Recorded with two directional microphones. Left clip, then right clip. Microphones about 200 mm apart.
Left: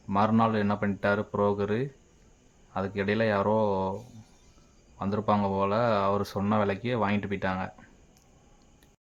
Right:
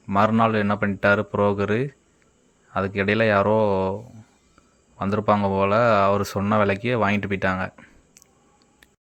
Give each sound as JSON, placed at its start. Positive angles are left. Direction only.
{"t": 0.1, "sound": "speech", "side_deg": -10}
{"t": 4.9, "sound": "speech", "side_deg": -15}